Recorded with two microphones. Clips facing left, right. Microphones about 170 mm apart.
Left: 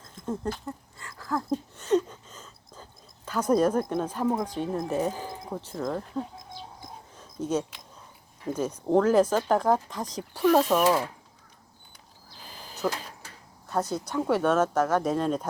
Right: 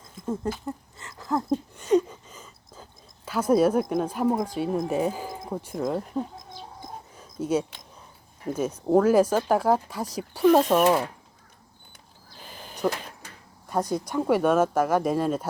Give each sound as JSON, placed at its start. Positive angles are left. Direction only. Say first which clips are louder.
{"t": 0.3, "sound": "speech", "louder": "right 2 dB", "side_deg": -10}
{"t": 0.9, "sound": "a sound", "louder": "right 3 dB", "side_deg": -20}
{"t": 3.2, "sound": "speech", "louder": "right 2 dB", "side_deg": -10}
{"t": 7.2, "sound": "a sound", "louder": "right 3 dB", "side_deg": -10}
{"t": 8.5, "sound": "speech", "louder": "right 2 dB", "side_deg": -10}
{"t": 12.8, "sound": "speech", "louder": "right 3 dB", "side_deg": -15}